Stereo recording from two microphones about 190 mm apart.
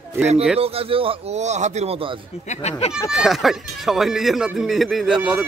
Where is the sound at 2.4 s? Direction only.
35° left (ahead or behind).